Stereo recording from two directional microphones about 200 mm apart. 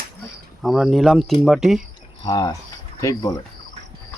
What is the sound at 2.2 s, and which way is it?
Speech, 20° left (ahead or behind).